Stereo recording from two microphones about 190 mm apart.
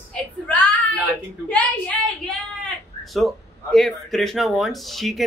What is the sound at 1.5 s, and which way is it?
Speech, 5° left (ahead or behind).